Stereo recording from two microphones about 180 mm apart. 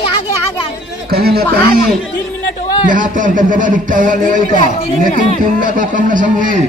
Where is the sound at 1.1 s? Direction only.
60° right (ahead or behind).